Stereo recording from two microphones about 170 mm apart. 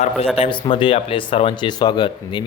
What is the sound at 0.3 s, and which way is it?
Speech, 35° left (ahead or behind).